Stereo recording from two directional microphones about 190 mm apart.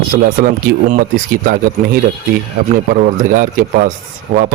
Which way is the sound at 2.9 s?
45° right (ahead or behind).